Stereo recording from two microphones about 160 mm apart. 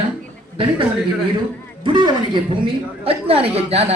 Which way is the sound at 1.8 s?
30° right (ahead or behind).